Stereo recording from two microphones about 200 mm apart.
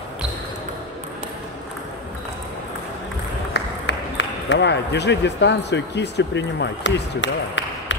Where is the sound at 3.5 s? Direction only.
60° left (ahead or behind).